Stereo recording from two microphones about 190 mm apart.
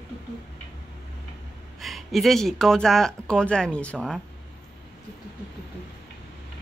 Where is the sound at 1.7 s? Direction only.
Centre (ahead or behind).